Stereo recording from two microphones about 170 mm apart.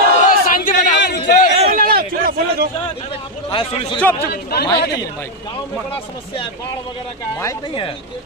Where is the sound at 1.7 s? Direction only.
60° right (ahead or behind).